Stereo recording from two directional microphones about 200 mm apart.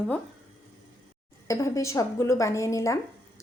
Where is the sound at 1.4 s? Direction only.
15° left (ahead or behind).